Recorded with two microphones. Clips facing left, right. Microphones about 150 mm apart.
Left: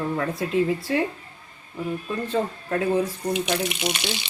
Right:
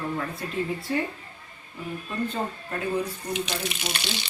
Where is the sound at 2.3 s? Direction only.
90° left.